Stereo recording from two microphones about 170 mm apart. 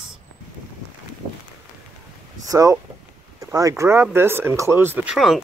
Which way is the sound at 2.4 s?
20° right (ahead or behind).